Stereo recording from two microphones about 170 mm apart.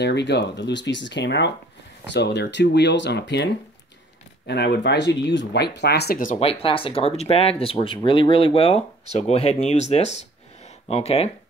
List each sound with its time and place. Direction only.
0.0 s speech: 85° left
4.5 s speech: 80° left; by 6.4 s 55° left (ahead or behind)
6.4 s speech: 35° left (ahead or behind)